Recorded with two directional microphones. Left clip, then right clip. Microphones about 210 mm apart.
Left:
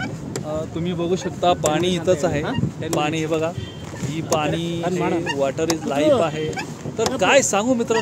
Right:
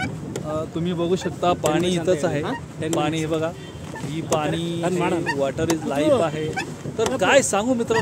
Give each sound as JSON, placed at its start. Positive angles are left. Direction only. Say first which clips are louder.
{"t": 0.5, "sound": "speech", "louder": "even", "side_deg": -10}
{"t": 4.8, "sound": "speech", "louder": "even", "side_deg": -50}
{"t": 5.4, "sound": "speech", "louder": "left 1 dB", "side_deg": 5}